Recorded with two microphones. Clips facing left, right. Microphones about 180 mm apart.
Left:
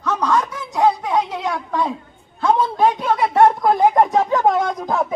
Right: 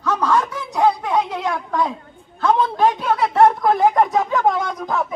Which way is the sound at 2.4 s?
10° left (ahead or behind).